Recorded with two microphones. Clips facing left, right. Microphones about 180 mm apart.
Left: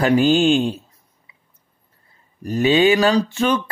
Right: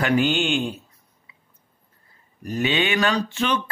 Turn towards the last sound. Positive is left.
turn(degrees=40)  # may be behind; listen again after turning